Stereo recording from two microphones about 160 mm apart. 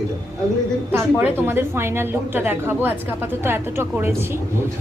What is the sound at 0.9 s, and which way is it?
A woman's voice, 15° right (ahead or behind).